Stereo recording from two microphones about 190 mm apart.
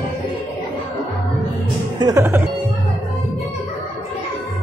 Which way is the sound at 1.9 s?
20° right (ahead or behind).